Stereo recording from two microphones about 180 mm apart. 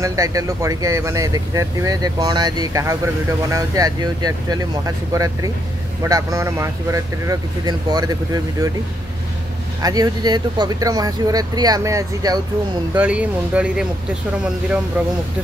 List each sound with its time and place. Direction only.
0.0 s speech: 20° right (ahead or behind)
9.8 s speech: 20° right (ahead or behind)
12.9 s speech: 5° right (ahead or behind)